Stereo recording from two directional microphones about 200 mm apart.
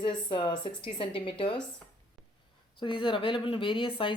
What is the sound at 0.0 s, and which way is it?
Speech, 25° left (ahead or behind).